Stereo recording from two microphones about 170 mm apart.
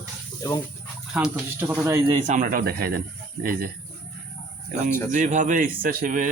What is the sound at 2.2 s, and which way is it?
Speech, 50° right (ahead or behind).